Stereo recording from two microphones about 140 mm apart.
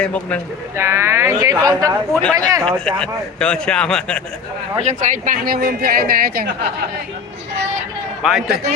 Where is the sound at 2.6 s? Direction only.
5° left (ahead or behind).